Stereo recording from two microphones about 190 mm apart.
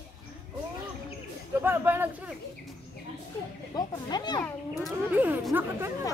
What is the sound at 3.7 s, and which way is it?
Speech, 20° left (ahead or behind).